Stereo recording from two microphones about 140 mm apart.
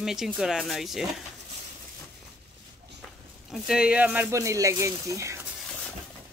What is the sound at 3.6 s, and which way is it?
Speech, 5° right (ahead or behind).